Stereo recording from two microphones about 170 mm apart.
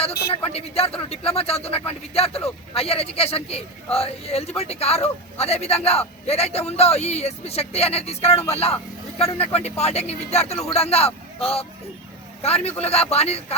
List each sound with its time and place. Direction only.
0.0 s speech: 35° left (ahead or behind)